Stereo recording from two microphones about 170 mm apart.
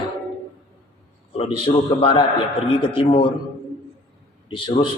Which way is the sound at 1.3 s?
35° left (ahead or behind).